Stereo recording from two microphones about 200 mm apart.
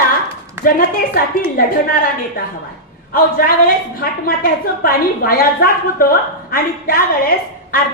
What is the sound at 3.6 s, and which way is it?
A woman's voice, 45° left (ahead or behind).